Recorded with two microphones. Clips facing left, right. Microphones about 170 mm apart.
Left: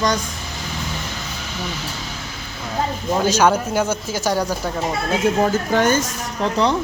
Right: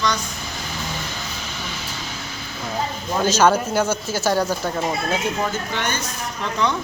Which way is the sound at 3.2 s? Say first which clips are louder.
Right 1 dB; 15° left (ahead or behind).